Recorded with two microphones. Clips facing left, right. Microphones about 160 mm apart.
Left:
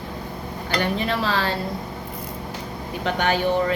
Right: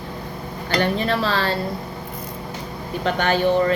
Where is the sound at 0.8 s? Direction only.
10° left (ahead or behind).